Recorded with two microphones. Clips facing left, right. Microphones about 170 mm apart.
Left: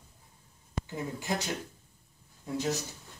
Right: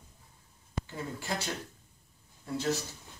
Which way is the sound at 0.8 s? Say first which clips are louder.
Left 4 dB; 15° left (ahead or behind).